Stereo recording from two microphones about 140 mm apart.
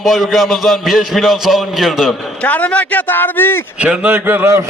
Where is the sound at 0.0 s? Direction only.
Centre (ahead or behind).